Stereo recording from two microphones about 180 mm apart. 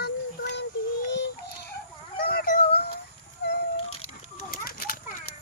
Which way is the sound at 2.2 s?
60° left (ahead or behind).